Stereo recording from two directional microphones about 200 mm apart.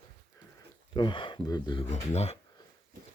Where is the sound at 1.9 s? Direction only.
30° left (ahead or behind).